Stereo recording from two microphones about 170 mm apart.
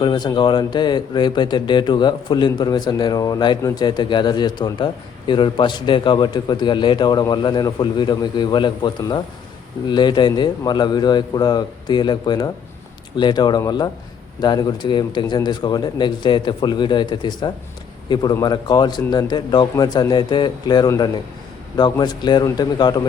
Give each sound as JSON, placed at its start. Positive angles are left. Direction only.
{"t": 0.0, "sound": "speech", "side_deg": 25}